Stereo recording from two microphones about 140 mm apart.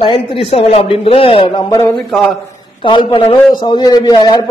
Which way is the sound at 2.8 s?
35° left (ahead or behind).